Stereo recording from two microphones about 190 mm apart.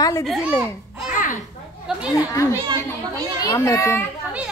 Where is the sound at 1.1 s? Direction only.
45° left (ahead or behind).